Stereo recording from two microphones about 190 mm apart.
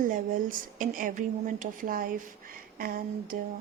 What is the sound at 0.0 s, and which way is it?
A woman's voice, 45° right (ahead or behind).